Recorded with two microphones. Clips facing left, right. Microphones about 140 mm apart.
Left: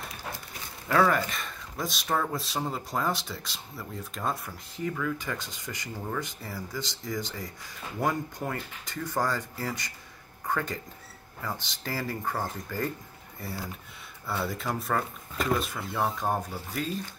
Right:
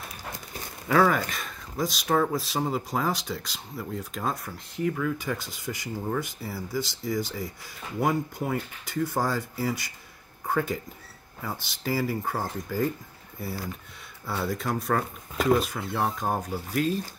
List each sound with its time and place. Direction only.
0.8 s speech: centre (ahead or behind)
14.2 s speech: centre (ahead or behind)